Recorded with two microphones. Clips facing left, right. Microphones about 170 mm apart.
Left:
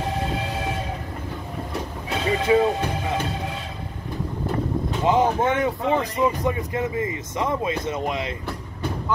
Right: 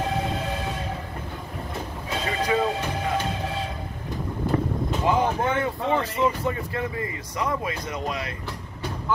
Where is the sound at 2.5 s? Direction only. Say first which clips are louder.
Left 6 dB; 20° left (ahead or behind).